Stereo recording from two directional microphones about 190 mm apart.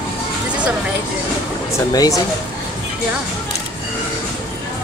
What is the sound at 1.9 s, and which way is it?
Speech, 20° left (ahead or behind).